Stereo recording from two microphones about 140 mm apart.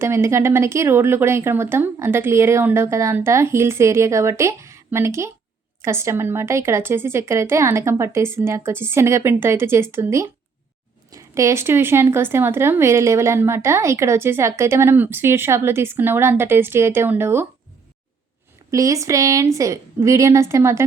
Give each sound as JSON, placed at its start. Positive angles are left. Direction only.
{"t": 0.0, "sound": "speech", "side_deg": -20}
{"t": 18.7, "sound": "speech", "side_deg": -25}